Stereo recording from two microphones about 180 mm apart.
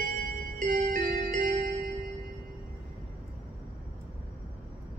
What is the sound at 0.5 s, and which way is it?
Music, 50° right (ahead or behind).